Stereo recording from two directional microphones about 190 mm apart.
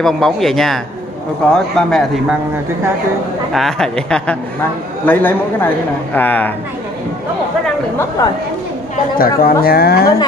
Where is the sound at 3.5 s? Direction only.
Centre (ahead or behind).